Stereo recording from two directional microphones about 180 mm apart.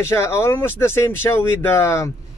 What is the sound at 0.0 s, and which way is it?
A man's voice, 15° left (ahead or behind).